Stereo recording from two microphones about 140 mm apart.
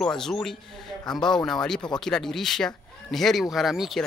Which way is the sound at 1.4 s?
5° left (ahead or behind).